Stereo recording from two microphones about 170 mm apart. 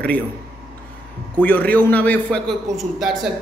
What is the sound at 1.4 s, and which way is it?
A man's voice, 10° left (ahead or behind).